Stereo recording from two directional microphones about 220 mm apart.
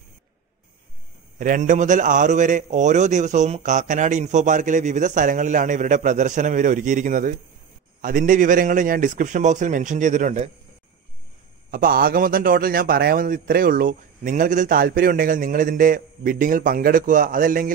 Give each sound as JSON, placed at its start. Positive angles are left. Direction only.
{"t": 1.4, "sound": "a man's voice", "side_deg": -35}
{"t": 11.7, "sound": "a man's voice", "side_deg": -40}